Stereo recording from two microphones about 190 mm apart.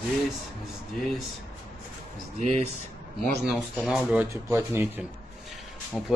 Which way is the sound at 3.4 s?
Centre (ahead or behind).